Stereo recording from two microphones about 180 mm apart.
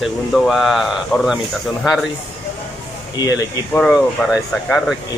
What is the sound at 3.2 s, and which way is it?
Speech, 20° left (ahead or behind).